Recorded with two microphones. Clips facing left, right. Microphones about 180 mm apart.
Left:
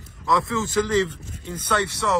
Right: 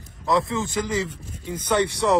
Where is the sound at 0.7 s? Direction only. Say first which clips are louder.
Left 5 dB; 10° right (ahead or behind).